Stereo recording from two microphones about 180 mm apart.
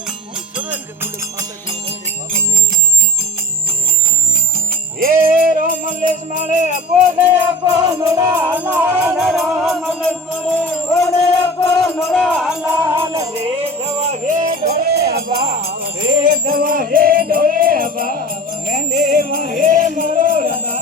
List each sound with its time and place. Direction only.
0.3 s music: 10° right (ahead or behind)
4.9 s music: 50° right (ahead or behind)
7.6 s music: 25° right (ahead or behind); by 12.1 s 15° left (ahead or behind)
12.1 s music: centre (ahead or behind)
12.6 s music: 15° right (ahead or behind)
13.4 s music: 35° right (ahead or behind); by 20.7 s 50° right (ahead or behind)